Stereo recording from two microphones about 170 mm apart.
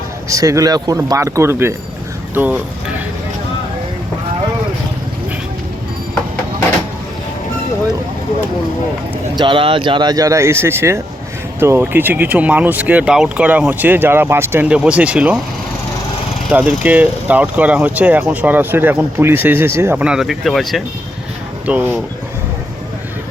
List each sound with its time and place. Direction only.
0.3 s speech: 20° right (ahead or behind)
9.3 s speech: 30° right (ahead or behind); by 15.4 s 5° right (ahead or behind)
16.5 s speech: 10° right (ahead or behind)